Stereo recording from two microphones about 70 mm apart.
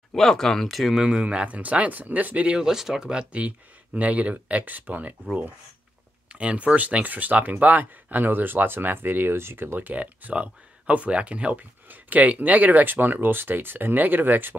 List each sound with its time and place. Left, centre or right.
0.1 s speech: centre; by 5.1 s right
6.3 s speech: centre